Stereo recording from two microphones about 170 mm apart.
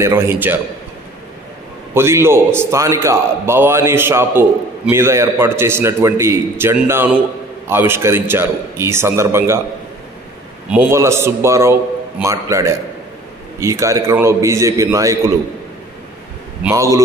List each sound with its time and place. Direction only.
0.0 s a man's voice: 15° right (ahead or behind)
2.0 s a man's voice: 15° right (ahead or behind)
10.7 s a man's voice: 10° right (ahead or behind)
16.6 s a man's voice: 15° right (ahead or behind)